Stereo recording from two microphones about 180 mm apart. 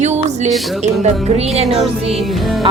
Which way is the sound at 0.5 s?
Centre (ahead or behind).